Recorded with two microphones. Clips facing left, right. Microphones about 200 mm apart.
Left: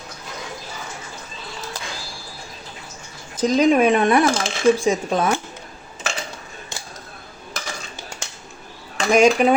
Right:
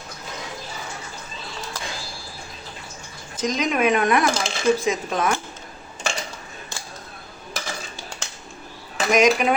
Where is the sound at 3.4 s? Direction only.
35° left (ahead or behind).